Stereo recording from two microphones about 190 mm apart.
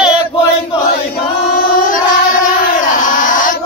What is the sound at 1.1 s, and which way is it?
Child singing, 50° left (ahead or behind).